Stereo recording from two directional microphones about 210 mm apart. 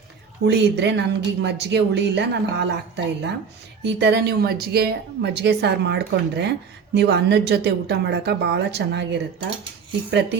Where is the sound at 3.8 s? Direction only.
55° right (ahead or behind).